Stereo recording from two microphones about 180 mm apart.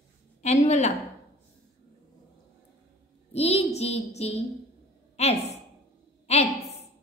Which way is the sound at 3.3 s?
35° left (ahead or behind).